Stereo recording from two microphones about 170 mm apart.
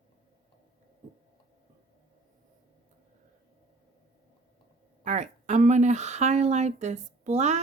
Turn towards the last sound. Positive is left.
turn(degrees=-40)  # may be behind; listen again after turning